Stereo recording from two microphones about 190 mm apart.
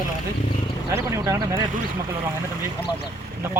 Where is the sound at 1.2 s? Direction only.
20° right (ahead or behind).